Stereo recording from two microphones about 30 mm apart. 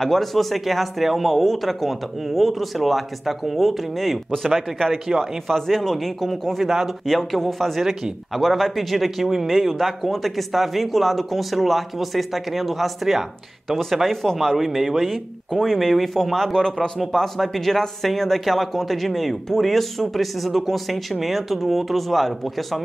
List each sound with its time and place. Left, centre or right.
0.0 s speech: centre
4.9 s speech: centre
5.5 s speech: centre
14.6 s speech: centre
15.0 s speech: centre
16.5 s speech: centre
17.0 s speech: centre